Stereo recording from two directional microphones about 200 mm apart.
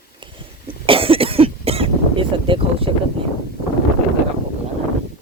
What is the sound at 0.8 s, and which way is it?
Cough, 25° right (ahead or behind).